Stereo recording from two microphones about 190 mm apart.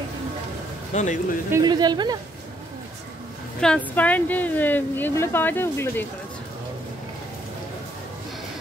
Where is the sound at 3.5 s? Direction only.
5° left (ahead or behind).